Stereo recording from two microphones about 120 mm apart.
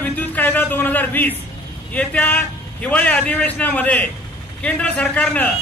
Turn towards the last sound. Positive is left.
turn(degrees=10)  # may be behind; listen again after turning